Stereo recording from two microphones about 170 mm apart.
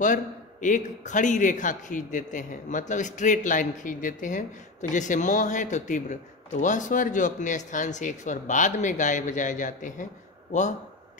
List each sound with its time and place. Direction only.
0.0 s a man's voice: 50° left (ahead or behind)